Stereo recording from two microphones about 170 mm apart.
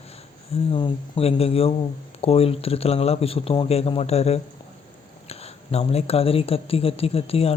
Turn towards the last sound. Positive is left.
turn(degrees=35)  # may be behind; listen again after turning